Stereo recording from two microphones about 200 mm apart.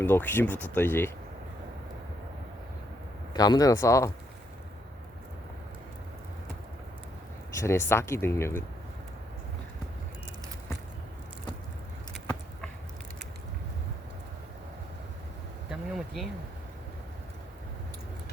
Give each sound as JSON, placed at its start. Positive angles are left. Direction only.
{"t": 0.0, "sound": "speech", "side_deg": 10}
{"t": 3.3, "sound": "speech", "side_deg": 20}
{"t": 7.5, "sound": "speech", "side_deg": 15}
{"t": 15.7, "sound": "a sound", "side_deg": 0}